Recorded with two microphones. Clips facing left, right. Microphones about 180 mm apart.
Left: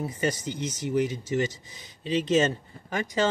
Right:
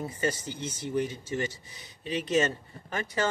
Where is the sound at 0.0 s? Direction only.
15° left (ahead or behind).